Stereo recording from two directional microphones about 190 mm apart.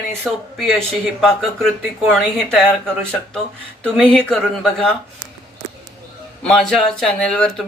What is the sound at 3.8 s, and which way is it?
Speech, 5° left (ahead or behind).